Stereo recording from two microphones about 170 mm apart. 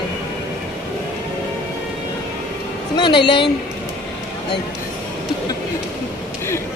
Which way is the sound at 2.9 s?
30° left (ahead or behind).